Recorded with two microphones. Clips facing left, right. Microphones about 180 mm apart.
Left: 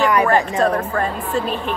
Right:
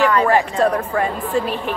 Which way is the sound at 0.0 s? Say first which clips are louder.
Even; 15° left (ahead or behind).